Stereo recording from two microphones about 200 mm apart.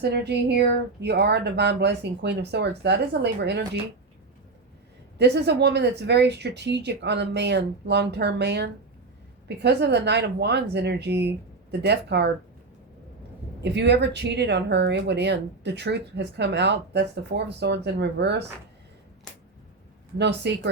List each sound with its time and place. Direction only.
0.0 s speech: 55° right (ahead or behind)
5.1 s speech: 55° right (ahead or behind)
13.6 s speech: 60° right (ahead or behind)
20.1 s speech: 60° right (ahead or behind)